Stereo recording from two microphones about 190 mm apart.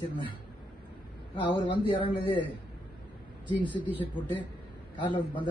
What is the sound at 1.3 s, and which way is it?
Speech, 25° left (ahead or behind).